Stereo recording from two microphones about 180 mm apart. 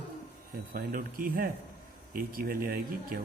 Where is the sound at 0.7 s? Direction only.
50° right (ahead or behind).